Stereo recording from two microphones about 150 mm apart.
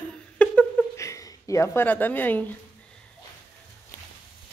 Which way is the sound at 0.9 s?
20° left (ahead or behind).